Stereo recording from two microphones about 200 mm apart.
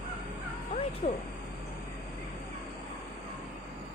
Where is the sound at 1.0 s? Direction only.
40° left (ahead or behind).